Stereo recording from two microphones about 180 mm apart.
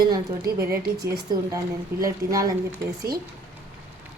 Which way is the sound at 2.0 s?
20° right (ahead or behind).